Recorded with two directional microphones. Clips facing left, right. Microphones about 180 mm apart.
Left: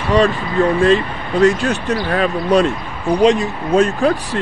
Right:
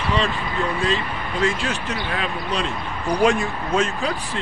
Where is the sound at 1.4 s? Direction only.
40° left (ahead or behind).